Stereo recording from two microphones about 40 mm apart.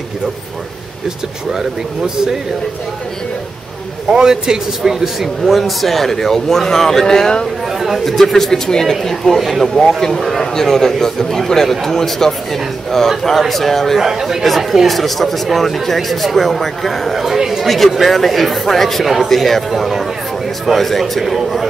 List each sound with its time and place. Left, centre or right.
1.0 s speech: centre
4.1 s speech: centre
5.4 s a man's voice: centre
13.9 s speech: centre